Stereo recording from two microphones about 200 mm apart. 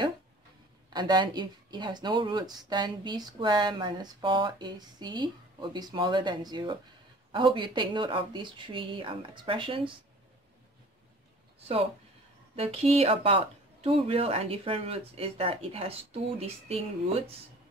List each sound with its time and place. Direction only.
0.8 s speech: 20° right (ahead or behind)
12.5 s speech: 30° right (ahead or behind)